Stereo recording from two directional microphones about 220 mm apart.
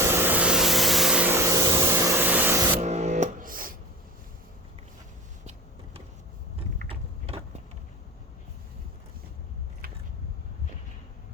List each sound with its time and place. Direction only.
0.0 s vehicle: 10° right (ahead or behind)
2.8 s music: 30° right (ahead or behind)
6.8 s mechanisms: 25° right (ahead or behind)